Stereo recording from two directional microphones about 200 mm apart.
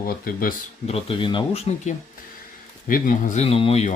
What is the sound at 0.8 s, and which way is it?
Speech, 30° left (ahead or behind).